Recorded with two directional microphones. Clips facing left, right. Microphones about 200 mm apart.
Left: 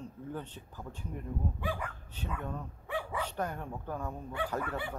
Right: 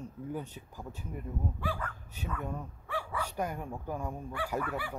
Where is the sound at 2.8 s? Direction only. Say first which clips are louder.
Left 2 dB; 20° left (ahead or behind).